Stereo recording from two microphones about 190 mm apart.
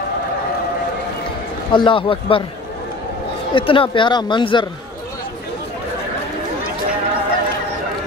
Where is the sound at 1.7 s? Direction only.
25° left (ahead or behind).